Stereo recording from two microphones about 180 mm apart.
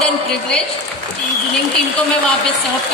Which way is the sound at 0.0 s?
5° left (ahead or behind).